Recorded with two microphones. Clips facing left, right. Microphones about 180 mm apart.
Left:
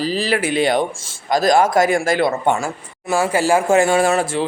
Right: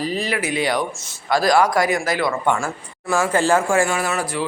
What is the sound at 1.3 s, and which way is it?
Speech, 45° left (ahead or behind).